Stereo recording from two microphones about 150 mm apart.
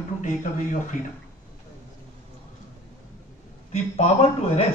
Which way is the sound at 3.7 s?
45° left (ahead or behind).